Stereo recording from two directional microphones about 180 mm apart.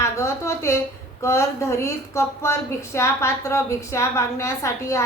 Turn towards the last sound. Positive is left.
turn(degrees=15)  # may be behind; listen again after turning